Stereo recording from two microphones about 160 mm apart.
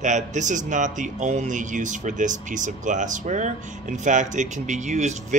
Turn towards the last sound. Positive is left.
turn(degrees=-45)  # may be behind; listen again after turning